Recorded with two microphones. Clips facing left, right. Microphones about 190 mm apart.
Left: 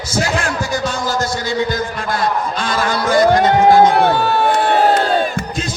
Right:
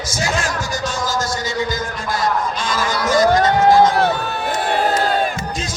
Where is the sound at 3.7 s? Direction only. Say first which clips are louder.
Left 3 dB; 60° left (ahead or behind).